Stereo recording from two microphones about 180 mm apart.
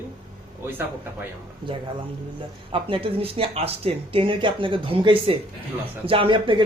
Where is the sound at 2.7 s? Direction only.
30° right (ahead or behind).